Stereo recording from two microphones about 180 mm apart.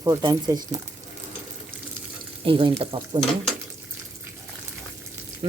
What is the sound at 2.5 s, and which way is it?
Speech, 30° right (ahead or behind).